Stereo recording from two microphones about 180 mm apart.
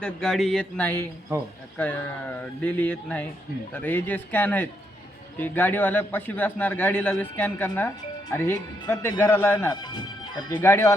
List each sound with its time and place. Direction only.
0.0 s a man's voice: 5° left (ahead or behind)